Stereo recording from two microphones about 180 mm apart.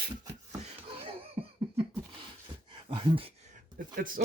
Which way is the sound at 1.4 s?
30° right (ahead or behind).